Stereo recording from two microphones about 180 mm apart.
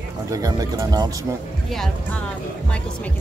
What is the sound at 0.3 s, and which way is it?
Speech, 20° right (ahead or behind).